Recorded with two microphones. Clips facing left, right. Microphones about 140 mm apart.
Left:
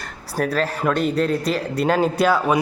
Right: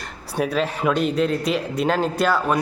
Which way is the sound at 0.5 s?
Centre (ahead or behind).